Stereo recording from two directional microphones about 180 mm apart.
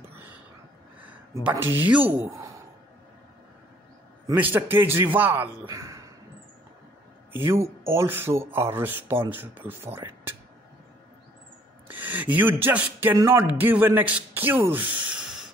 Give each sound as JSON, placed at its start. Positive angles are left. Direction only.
{"t": 1.3, "sound": "speech", "side_deg": -15}
{"t": 4.4, "sound": "speech", "side_deg": -10}
{"t": 7.3, "sound": "speech", "side_deg": -15}
{"t": 11.9, "sound": "a sound", "side_deg": -10}
{"t": 13.1, "sound": "speech", "side_deg": -15}